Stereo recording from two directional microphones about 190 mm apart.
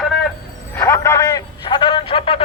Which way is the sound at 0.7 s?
15° left (ahead or behind).